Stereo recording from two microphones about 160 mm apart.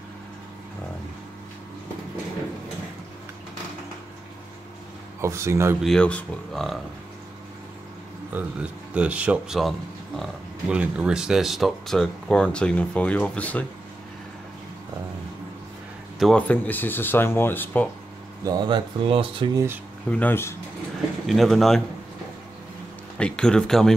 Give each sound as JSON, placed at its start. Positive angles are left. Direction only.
{"t": 5.2, "sound": "speech", "side_deg": -15}
{"t": 5.8, "sound": "speech", "side_deg": 5}
{"t": 8.3, "sound": "a man's voice", "side_deg": -10}
{"t": 16.2, "sound": "speech", "side_deg": 5}
{"t": 18.4, "sound": "speech", "side_deg": -25}
{"t": 20.1, "sound": "speech", "side_deg": 10}
{"t": 21.3, "sound": "speech", "side_deg": 0}
{"t": 23.1, "sound": "speech", "side_deg": 5}